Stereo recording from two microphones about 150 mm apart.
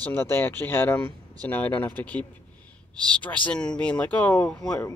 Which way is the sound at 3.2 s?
10° left (ahead or behind).